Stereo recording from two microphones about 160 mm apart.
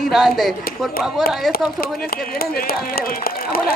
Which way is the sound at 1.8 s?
70° left (ahead or behind).